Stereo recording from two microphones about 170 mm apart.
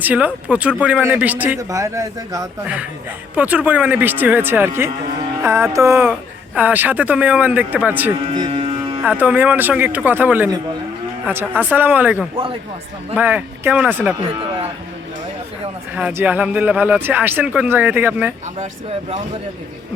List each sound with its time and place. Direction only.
0.0 s a man's voice: 10° right (ahead or behind)
5.4 s music: 15° right (ahead or behind)
5.7 s speech: 15° right (ahead or behind)
8.4 s speech: 35° right (ahead or behind)
9.0 s speech: 10° right (ahead or behind)
16.0 s speech: 10° right (ahead or behind)